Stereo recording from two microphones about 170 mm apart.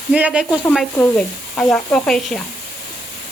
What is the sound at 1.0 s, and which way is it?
A child's voice, 5° left (ahead or behind).